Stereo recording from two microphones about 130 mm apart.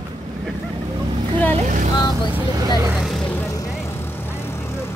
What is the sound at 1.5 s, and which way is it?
Vehicle, 70° right (ahead or behind).